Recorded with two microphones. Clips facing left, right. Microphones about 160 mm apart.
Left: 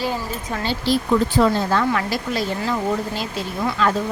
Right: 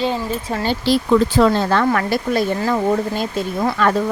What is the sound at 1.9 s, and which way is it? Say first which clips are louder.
Speech: right 4 dB; 50° right (ahead or behind).